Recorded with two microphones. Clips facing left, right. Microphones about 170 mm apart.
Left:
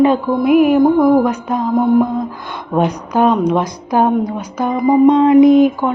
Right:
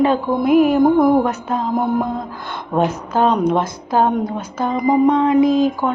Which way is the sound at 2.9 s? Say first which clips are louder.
Left 3 dB; 15° left (ahead or behind).